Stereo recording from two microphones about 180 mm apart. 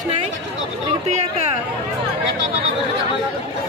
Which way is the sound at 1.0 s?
40° right (ahead or behind).